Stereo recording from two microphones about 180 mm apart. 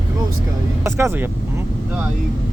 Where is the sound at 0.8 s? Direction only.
15° right (ahead or behind).